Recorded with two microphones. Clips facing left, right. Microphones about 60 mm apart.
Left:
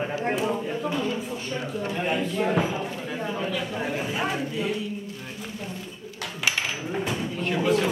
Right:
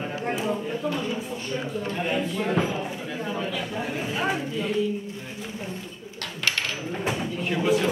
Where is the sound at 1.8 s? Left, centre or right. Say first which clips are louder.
Left 1 dB; centre.